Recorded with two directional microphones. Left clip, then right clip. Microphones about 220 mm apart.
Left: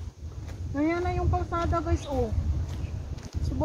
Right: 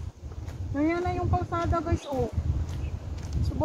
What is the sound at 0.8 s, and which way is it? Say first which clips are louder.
Speech: even; 10° right (ahead or behind).